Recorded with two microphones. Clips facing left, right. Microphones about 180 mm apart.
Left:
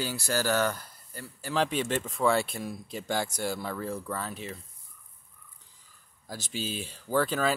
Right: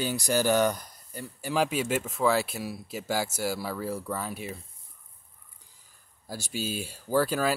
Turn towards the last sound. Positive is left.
turn(degrees=-10)  # may be behind; listen again after turning